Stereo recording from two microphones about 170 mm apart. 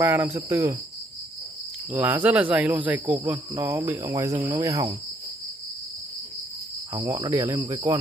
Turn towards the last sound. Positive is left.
turn(degrees=-20)  # may be behind; listen again after turning